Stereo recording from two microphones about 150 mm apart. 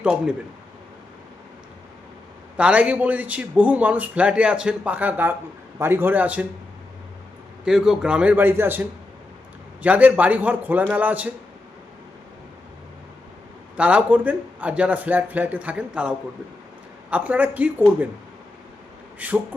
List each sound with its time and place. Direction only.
0.0 s speech: 5° right (ahead or behind)
2.6 s speech: 10° right (ahead or behind)
7.6 s speech: 5° right (ahead or behind)
13.7 s speech: 10° right (ahead or behind)
19.2 s speech: 10° right (ahead or behind)